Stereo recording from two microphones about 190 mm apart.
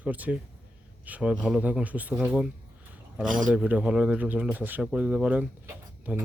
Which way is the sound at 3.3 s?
45° right (ahead or behind).